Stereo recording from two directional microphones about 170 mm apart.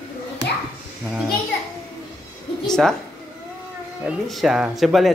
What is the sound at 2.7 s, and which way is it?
Speech, 5° left (ahead or behind).